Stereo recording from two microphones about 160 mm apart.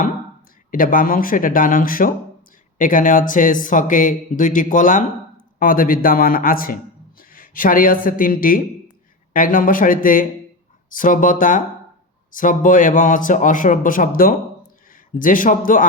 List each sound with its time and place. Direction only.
0.7 s speech: 60° left (ahead or behind)